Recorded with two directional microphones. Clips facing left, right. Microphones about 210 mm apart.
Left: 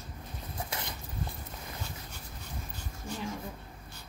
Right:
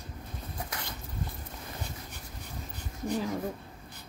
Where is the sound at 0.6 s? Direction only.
20° left (ahead or behind).